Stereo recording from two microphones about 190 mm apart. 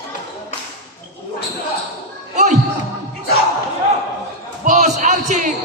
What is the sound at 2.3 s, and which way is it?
Music, 40° right (ahead or behind).